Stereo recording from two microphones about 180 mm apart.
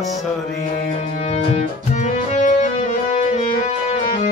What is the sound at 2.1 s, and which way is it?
Music, 40° left (ahead or behind).